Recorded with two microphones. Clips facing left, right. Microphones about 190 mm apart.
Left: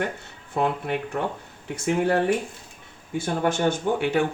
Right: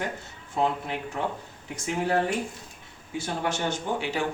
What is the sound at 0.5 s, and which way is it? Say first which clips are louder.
Speech: left 2 dB; 60° left (ahead or behind).